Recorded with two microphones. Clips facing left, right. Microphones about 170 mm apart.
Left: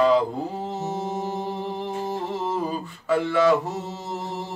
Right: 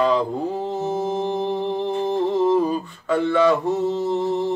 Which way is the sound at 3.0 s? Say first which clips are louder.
Right 2 dB; 5° left (ahead or behind).